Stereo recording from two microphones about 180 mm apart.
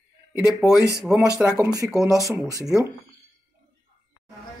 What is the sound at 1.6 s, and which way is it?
Speech, 20° right (ahead or behind).